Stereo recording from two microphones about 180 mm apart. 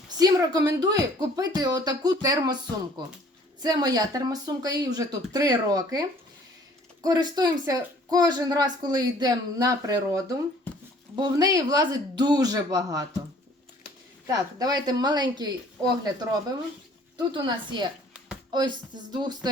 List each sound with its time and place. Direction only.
0.2 s a woman's voice: 20° right (ahead or behind)
14.3 s a woman's voice: 20° right (ahead or behind)
17.2 s a woman's voice: 25° right (ahead or behind)